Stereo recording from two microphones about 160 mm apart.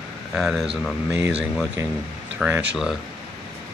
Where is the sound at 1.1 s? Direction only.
15° right (ahead or behind).